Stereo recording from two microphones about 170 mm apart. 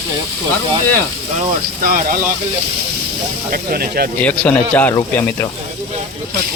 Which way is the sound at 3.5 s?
65° right (ahead or behind).